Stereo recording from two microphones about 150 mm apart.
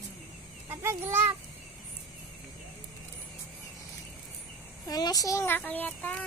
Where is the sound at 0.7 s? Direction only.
15° right (ahead or behind).